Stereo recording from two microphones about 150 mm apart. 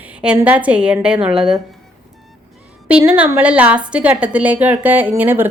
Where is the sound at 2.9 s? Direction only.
10° right (ahead or behind).